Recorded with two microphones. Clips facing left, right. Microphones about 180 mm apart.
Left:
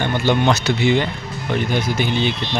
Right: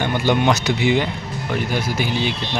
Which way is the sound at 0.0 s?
10° right (ahead or behind).